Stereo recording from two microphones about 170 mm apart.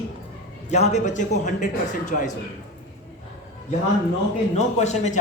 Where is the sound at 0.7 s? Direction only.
40° left (ahead or behind).